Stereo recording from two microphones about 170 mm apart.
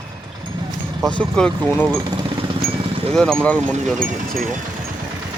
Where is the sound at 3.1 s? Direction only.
5° left (ahead or behind).